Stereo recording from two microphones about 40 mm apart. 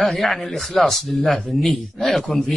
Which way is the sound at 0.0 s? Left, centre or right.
Centre.